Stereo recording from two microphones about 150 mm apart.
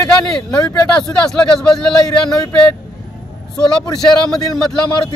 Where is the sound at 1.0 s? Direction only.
Centre (ahead or behind).